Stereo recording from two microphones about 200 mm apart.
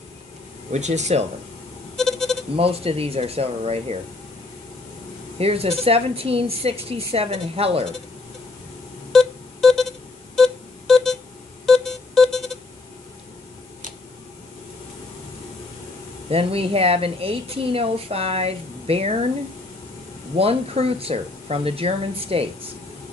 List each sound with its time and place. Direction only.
0.7 s speech: 35° right (ahead or behind)
2.0 s a sound: centre (ahead or behind)
2.5 s a woman's voice: 30° right (ahead or behind)
5.4 s a woman's voice: 30° right (ahead or behind)
9.1 s music: centre (ahead or behind)
16.3 s a woman's voice: 30° right (ahead or behind)
20.3 s a woman's voice: 30° right (ahead or behind)